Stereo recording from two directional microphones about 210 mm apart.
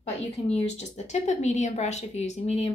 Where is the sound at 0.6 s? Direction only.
30° left (ahead or behind).